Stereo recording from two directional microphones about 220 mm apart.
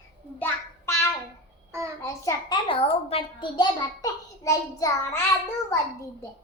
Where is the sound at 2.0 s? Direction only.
15° left (ahead or behind).